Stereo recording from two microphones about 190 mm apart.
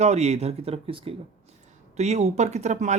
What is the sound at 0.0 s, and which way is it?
Speech, 35° right (ahead or behind).